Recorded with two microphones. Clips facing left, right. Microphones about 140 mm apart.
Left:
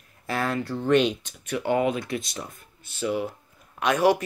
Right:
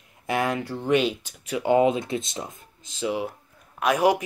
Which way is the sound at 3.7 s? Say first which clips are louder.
Right 1 dB; 5° right (ahead or behind).